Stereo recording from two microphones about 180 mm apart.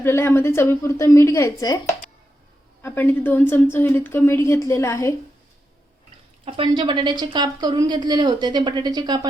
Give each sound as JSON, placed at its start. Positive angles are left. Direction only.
{"t": 0.0, "sound": "a woman's voice", "side_deg": 15}
{"t": 6.4, "sound": "a woman's voice", "side_deg": -30}